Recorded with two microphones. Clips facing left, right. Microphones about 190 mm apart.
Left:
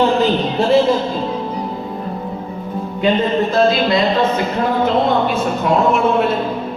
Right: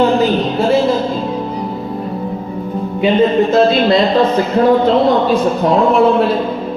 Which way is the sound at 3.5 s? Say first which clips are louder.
Right 4 dB; 25° right (ahead or behind).